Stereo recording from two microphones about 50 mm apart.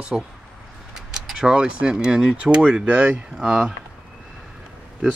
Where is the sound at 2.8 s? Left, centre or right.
Right.